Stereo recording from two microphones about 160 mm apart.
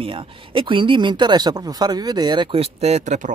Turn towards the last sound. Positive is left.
turn(degrees=-50)  # may be behind; listen again after turning